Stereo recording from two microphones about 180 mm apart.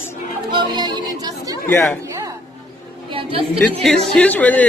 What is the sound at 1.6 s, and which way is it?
Speech, 5° left (ahead or behind).